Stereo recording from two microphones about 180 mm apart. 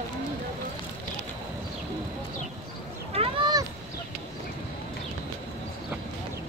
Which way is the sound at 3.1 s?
30° right (ahead or behind).